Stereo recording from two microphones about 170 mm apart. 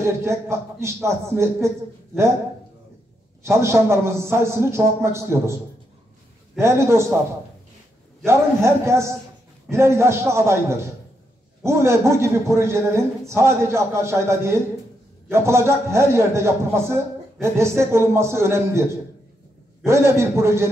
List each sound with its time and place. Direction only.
0.0 s a man's voice: 15° right (ahead or behind)
3.4 s a man's voice: 15° right (ahead or behind)
6.6 s a man's voice: 15° right (ahead or behind)
8.3 s a man's voice: 15° right (ahead or behind)